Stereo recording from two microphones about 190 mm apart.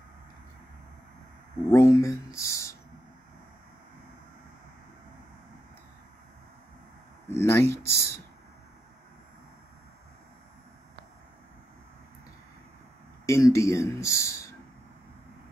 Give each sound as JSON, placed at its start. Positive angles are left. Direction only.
{"t": 1.7, "sound": "speech", "side_deg": 15}
{"t": 7.2, "sound": "speech", "side_deg": 15}
{"t": 13.2, "sound": "speech", "side_deg": 15}